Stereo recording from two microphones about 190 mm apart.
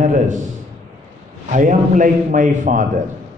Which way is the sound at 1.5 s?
45° right (ahead or behind).